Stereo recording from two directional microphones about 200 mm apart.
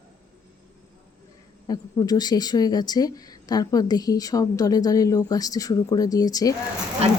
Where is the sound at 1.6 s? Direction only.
20° left (ahead or behind).